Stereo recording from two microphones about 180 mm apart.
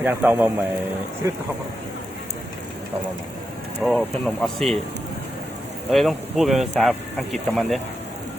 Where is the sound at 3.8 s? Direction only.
5° left (ahead or behind).